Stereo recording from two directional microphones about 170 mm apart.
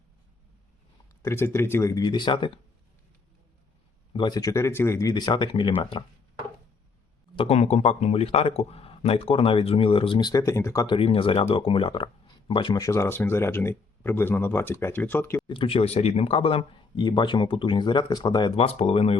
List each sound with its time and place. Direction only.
1.2 s speech: 15° left (ahead or behind)
4.1 s speech: 25° left (ahead or behind)
7.3 s a man's voice: 35° left (ahead or behind); by 15.4 s 10° left (ahead or behind)
15.4 s a man's voice: 30° left (ahead or behind)